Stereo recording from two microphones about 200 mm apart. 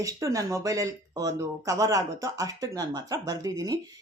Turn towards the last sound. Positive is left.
turn(degrees=-20)  # may be behind; listen again after turning